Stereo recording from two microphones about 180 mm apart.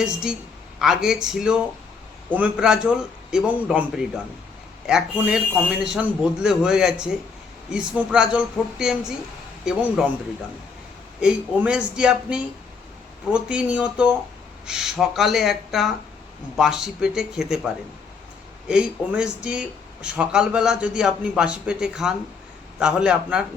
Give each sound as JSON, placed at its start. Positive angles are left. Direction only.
{"t": 0.0, "sound": "speech", "side_deg": -5}
{"t": 11.2, "sound": "speech", "side_deg": -5}
{"t": 18.7, "sound": "speech", "side_deg": -5}